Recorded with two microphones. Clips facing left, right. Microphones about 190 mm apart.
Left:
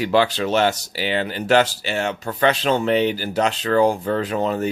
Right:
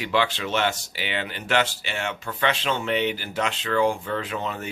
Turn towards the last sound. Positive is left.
turn(degrees=40)  # may be behind; listen again after turning